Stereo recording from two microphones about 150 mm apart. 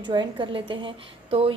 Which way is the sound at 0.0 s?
30° right (ahead or behind).